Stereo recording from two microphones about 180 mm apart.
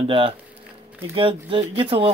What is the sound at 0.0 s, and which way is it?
Speech, 30° right (ahead or behind).